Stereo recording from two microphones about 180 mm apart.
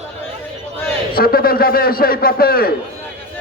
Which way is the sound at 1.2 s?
55° left (ahead or behind).